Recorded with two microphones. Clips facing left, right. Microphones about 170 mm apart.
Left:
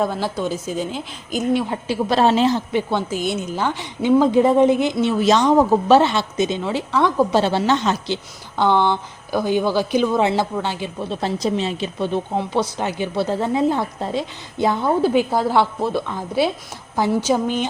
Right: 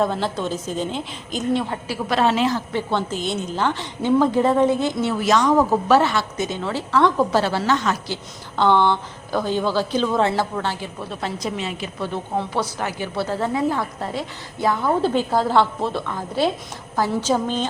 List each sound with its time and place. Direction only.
0.0 s a woman's voice: 5° left (ahead or behind)
1.7 s speech: 20° left (ahead or behind)
2.1 s a woman's voice: 30° left (ahead or behind)
11.2 s speech: 30° left (ahead or behind)
15.0 s a woman's voice: 10° left (ahead or behind)